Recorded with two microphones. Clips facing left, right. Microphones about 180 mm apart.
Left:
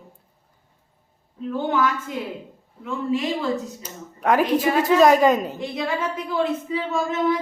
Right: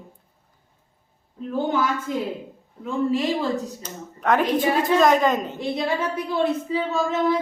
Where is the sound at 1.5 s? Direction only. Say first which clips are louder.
Even; 35° right (ahead or behind).